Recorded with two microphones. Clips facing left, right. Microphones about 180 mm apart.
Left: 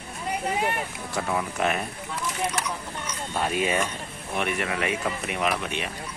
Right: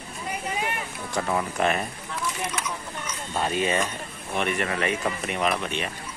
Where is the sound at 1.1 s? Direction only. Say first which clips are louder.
Right 2 dB; centre (ahead or behind).